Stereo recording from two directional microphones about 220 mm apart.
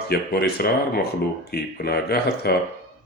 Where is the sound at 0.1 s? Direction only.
45° left (ahead or behind).